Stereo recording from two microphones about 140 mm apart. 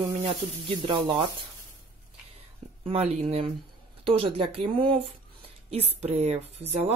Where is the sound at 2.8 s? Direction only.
45° right (ahead or behind).